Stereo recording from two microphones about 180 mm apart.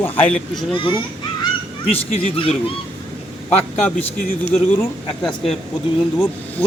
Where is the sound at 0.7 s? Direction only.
25° left (ahead or behind).